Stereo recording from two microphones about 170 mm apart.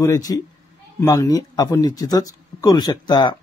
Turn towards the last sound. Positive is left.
turn(degrees=25)  # may be behind; listen again after turning